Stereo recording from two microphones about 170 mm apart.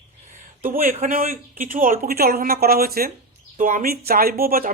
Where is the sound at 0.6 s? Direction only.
55° right (ahead or behind).